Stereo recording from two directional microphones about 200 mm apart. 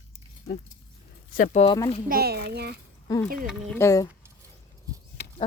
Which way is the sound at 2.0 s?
50° right (ahead or behind).